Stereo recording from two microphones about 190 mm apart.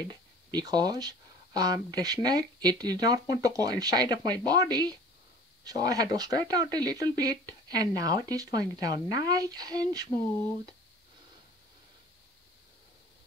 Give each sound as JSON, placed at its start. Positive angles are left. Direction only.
{"t": 0.1, "sound": "speech", "side_deg": -20}